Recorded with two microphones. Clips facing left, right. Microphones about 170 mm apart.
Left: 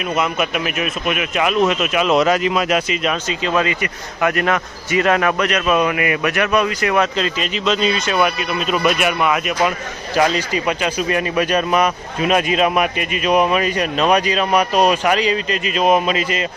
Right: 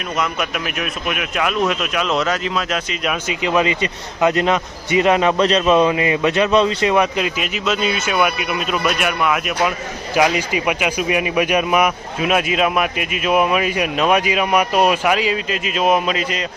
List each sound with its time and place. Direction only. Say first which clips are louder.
0.2 s a man's voice: left 1 dB; centre (ahead or behind)
3.0 s a man's voice: left 1 dB; 5° right (ahead or behind)
3.4 s a man's voice: right 2 dB; 20° right (ahead or behind); by 9.7 s centre (ahead or behind)
10.2 s speech: even; 10° right (ahead or behind)